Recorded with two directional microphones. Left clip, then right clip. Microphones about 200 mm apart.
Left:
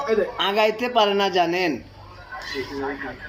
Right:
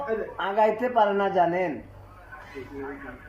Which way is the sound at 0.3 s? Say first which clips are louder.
Left 3 dB; 5° left (ahead or behind).